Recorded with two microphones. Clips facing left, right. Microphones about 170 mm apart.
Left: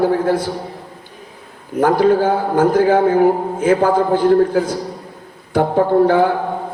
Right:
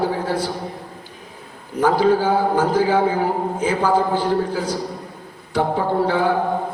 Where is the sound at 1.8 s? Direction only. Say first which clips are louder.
Left 3 dB; 55° left (ahead or behind).